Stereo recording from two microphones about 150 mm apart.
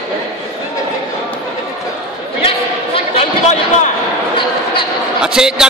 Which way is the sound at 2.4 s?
40° left (ahead or behind).